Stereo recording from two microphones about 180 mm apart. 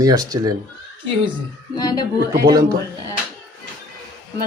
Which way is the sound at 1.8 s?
25° left (ahead or behind).